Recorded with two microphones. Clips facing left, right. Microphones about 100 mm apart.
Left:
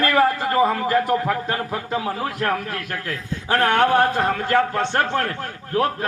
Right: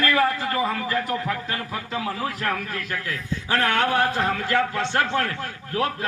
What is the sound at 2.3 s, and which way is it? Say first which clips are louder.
A man's voice: left 4 dB; 55° left (ahead or behind).